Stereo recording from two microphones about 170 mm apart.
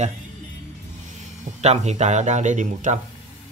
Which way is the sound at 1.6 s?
40° right (ahead or behind).